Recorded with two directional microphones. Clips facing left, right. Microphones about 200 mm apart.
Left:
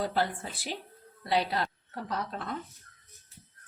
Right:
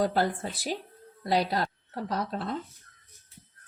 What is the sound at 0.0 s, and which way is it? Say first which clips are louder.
Speech: right 4 dB; 45° right (ahead or behind).